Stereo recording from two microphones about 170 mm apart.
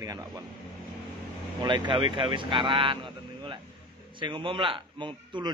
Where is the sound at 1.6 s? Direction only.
30° right (ahead or behind).